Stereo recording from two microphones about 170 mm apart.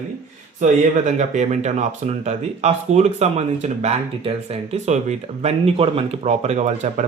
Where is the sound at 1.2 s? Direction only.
45° right (ahead or behind).